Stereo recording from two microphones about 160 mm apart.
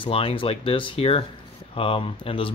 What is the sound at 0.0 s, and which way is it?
Speech, 35° left (ahead or behind).